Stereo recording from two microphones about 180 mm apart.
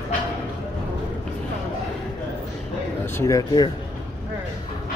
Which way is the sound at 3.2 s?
20° left (ahead or behind).